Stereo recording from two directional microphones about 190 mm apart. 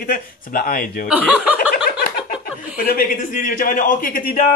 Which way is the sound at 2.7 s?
50° left (ahead or behind).